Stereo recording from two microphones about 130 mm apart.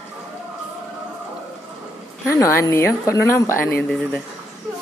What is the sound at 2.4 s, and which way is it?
A woman's voice, 25° left (ahead or behind).